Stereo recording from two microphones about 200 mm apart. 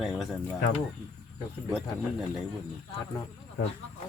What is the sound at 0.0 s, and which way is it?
Speech, centre (ahead or behind).